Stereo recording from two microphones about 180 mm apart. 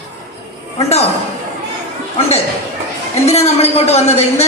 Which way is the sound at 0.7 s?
35° left (ahead or behind).